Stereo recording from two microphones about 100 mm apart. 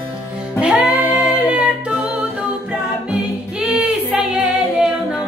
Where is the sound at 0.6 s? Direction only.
10° right (ahead or behind).